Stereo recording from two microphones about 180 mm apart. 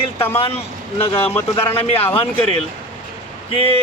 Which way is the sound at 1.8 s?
35° left (ahead or behind).